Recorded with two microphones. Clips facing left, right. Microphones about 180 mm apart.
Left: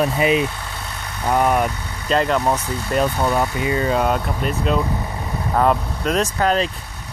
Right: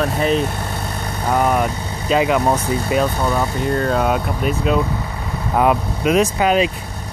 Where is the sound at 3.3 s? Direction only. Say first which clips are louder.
Right 1 dB; 5° left (ahead or behind).